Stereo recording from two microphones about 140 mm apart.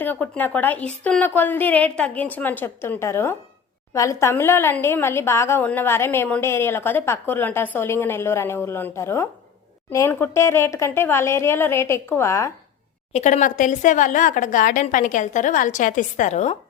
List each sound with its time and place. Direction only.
0.0 s a woman's voice: 15° left (ahead or behind)
13.1 s speech: 60° left (ahead or behind)